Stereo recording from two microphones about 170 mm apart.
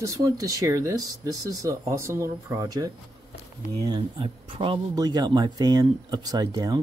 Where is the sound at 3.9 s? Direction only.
30° right (ahead or behind).